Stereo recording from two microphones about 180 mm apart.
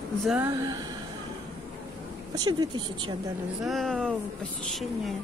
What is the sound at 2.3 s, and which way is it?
Speech, 25° right (ahead or behind).